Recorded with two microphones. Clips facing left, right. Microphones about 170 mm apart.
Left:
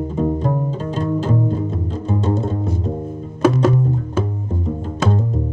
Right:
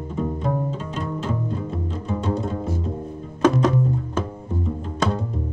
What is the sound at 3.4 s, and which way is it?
Music, 5° left (ahead or behind).